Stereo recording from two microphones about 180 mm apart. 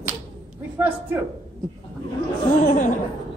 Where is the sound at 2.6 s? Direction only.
45° left (ahead or behind).